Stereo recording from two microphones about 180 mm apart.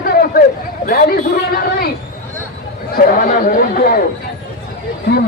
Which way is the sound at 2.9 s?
50° left (ahead or behind).